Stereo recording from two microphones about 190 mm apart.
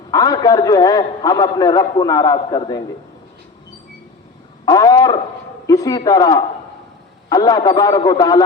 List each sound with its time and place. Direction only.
0.1 s a man's voice: 20° left (ahead or behind)
4.6 s a sound: 20° left (ahead or behind)
5.6 s a man's voice: 20° left (ahead or behind)